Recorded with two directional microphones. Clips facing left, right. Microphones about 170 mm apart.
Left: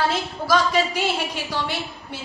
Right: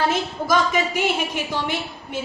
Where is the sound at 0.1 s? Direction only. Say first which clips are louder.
Right 1 dB; 20° right (ahead or behind).